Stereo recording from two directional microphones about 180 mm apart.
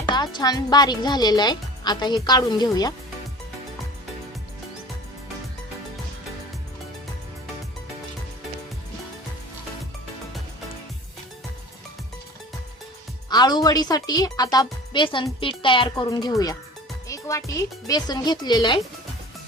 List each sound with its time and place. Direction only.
0.1 s a woman's voice: 25° left (ahead or behind)
13.3 s a woman's voice: 25° left (ahead or behind)